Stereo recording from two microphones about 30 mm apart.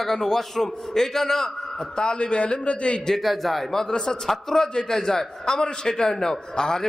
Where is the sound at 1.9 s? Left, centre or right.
Left.